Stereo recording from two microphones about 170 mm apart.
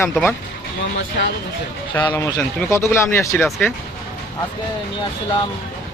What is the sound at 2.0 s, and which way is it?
Speech, 20° left (ahead or behind).